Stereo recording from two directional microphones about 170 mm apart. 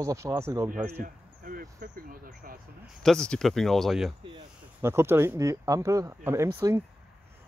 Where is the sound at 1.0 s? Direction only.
55° right (ahead or behind).